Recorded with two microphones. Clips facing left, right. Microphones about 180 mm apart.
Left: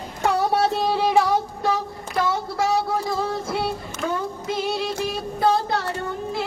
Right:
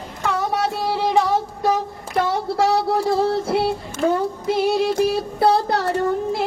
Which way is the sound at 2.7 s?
70° right (ahead or behind).